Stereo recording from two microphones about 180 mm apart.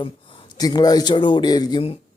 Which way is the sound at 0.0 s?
30° left (ahead or behind).